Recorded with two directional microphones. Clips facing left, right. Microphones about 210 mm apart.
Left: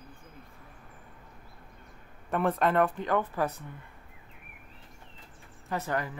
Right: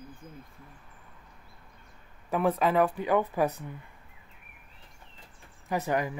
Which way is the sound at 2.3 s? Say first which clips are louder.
Right 1 dB; 5° right (ahead or behind).